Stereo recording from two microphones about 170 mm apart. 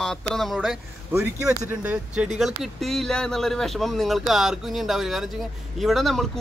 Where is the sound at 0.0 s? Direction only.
5° left (ahead or behind).